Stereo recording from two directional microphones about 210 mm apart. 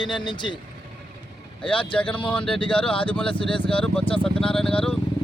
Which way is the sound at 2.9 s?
25° left (ahead or behind).